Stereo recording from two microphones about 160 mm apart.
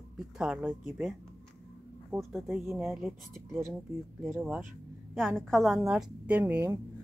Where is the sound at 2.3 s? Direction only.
5° right (ahead or behind).